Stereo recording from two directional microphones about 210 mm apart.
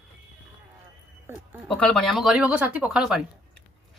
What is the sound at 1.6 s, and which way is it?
Speech, 5° left (ahead or behind).